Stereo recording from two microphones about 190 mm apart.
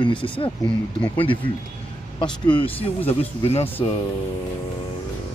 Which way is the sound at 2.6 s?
30° left (ahead or behind).